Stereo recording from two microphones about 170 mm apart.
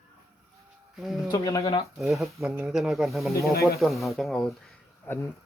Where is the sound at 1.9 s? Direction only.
Centre (ahead or behind).